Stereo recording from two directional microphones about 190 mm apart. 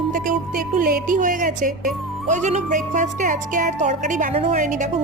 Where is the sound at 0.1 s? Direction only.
45° right (ahead or behind).